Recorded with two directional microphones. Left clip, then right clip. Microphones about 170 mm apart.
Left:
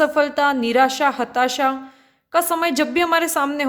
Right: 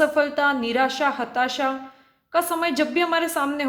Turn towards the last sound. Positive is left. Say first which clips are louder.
# left 4 dB
turn(degrees=30)  # may be behind; listen again after turning